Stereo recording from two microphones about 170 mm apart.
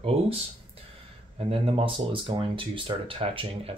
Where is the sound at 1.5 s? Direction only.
30° right (ahead or behind).